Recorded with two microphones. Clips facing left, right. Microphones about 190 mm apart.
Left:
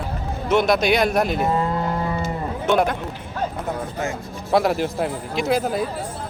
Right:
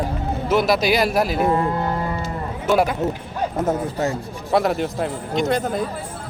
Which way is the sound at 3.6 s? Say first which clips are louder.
Right 5 dB; 35° right (ahead or behind).